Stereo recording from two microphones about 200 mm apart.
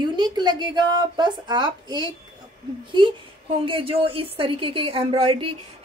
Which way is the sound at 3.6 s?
25° right (ahead or behind).